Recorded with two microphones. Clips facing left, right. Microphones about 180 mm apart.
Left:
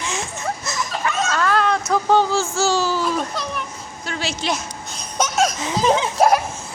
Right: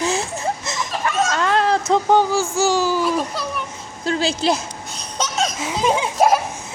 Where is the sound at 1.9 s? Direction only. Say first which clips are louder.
Right 1 dB; 15° right (ahead or behind).